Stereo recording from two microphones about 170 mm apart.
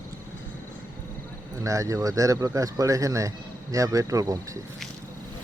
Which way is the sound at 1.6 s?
20° right (ahead or behind).